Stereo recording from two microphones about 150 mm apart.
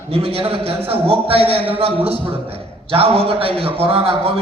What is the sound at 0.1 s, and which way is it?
A man's voice, 40° right (ahead or behind).